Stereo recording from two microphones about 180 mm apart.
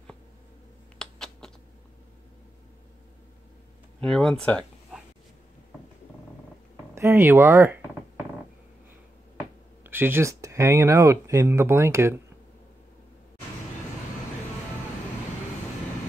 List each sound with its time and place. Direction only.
0.9 s typing: 5° left (ahead or behind)
4.0 s speech: 5° left (ahead or behind)
7.0 s speech: 15° right (ahead or behind)
9.8 s speech: 10° right (ahead or behind)